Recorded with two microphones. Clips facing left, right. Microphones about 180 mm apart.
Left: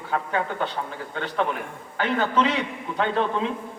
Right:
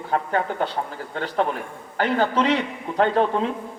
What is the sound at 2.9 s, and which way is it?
Speech, 40° right (ahead or behind).